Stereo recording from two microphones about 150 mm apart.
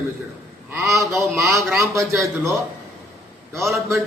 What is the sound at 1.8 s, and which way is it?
Speech, 20° right (ahead or behind).